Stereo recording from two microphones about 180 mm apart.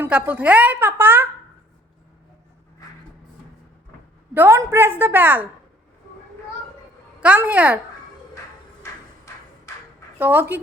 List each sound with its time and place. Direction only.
0.0 s a woman's voice: 10° right (ahead or behind)
4.4 s a woman's voice: 15° right (ahead or behind)
7.2 s a woman's voice: 10° right (ahead or behind)
8.8 s a sound: 15° left (ahead or behind)
10.2 s a woman's voice: 10° right (ahead or behind)